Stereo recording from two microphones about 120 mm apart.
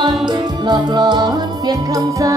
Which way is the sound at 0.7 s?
35° right (ahead or behind).